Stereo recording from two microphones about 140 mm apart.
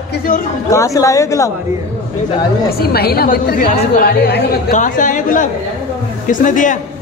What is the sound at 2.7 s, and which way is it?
A woman's voice, 90° left.